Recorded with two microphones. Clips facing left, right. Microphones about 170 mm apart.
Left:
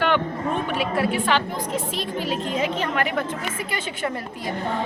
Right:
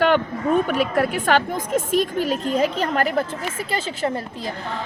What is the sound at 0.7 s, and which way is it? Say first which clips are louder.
A woman's voice: right 3 dB; 45° right (ahead or behind).